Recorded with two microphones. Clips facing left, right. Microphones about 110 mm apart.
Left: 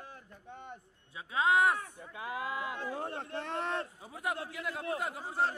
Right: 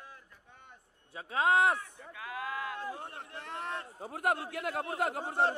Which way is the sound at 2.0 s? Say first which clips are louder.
Left 2 dB; 25° left (ahead or behind).